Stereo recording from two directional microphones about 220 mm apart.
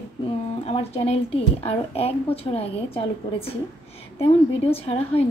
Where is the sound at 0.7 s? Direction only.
30° left (ahead or behind).